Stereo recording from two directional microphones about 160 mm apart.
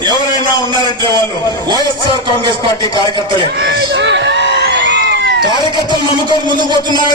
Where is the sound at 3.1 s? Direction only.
30° right (ahead or behind).